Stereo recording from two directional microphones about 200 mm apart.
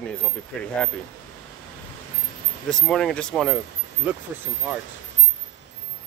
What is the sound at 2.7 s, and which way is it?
Speech, 5° left (ahead or behind).